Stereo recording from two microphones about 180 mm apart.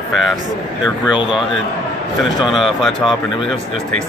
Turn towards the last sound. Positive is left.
turn(degrees=0)  # may be behind; listen again after turning